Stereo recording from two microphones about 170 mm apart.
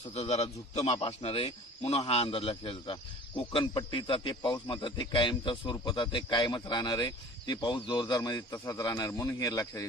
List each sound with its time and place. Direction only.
0.1 s a man's voice: 40° left (ahead or behind); by 9.8 s 20° left (ahead or behind)